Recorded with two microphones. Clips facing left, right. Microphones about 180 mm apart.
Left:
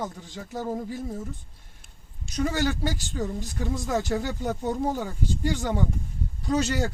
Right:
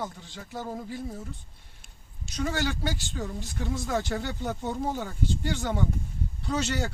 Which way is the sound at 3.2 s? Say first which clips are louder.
Left 7 dB; 20° left (ahead or behind).